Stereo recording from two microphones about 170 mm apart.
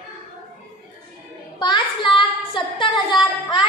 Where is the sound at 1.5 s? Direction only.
25° left (ahead or behind).